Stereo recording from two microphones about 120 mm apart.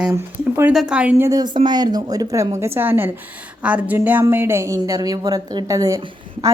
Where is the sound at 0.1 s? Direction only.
25° right (ahead or behind).